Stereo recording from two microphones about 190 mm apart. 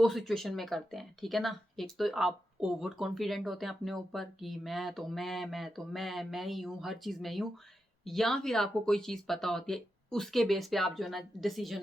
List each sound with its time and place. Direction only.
0.0 s speech: centre (ahead or behind)